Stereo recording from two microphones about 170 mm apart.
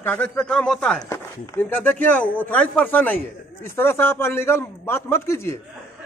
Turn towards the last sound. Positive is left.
turn(degrees=15)  # may be behind; listen again after turning